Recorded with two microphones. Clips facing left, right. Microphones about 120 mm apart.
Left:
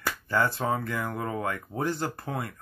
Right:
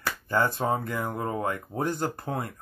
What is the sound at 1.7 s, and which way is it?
Speech, 10° right (ahead or behind).